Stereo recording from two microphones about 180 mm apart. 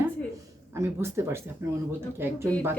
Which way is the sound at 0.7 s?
15° right (ahead or behind).